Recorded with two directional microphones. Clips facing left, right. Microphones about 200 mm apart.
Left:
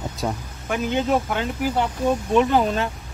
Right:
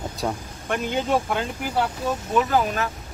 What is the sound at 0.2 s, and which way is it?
Speech, centre (ahead or behind).